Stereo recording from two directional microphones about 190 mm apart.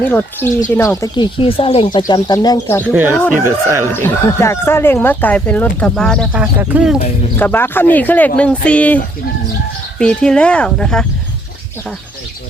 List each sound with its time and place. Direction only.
0.1 s speech: 10° left (ahead or behind)
2.8 s speech: 10° right (ahead or behind)
3.9 s speech: 10° left (ahead or behind)
6.3 s speech: 10° right (ahead or behind)
7.3 s speech: 10° left (ahead or behind)
10.0 s speech: 5° left (ahead or behind)